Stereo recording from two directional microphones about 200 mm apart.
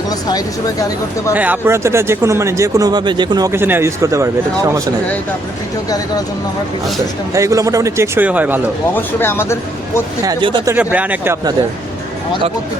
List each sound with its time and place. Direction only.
0.1 s speech: 20° left (ahead or behind)
1.3 s speech: 10° right (ahead or behind)
7.3 s speech: 15° right (ahead or behind)
9.0 s speech: 10° left (ahead or behind)
10.2 s speech: 20° right (ahead or behind)
10.8 s speech: 5° right (ahead or behind)